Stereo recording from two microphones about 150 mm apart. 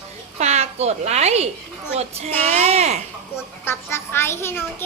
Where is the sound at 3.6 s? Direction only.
15° left (ahead or behind).